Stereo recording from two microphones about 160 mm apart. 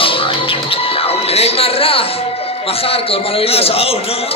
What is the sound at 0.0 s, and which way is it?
Music, 35° left (ahead or behind).